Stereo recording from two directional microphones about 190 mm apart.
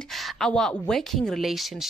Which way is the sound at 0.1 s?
Centre (ahead or behind).